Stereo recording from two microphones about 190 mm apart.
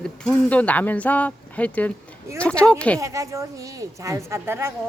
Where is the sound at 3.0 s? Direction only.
15° right (ahead or behind).